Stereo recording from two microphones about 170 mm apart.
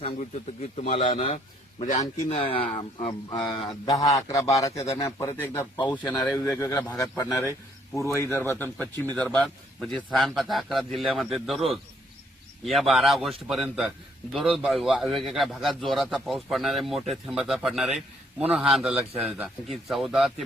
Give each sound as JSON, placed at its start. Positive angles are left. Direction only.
{"t": 0.2, "sound": "a man's voice", "side_deg": 40}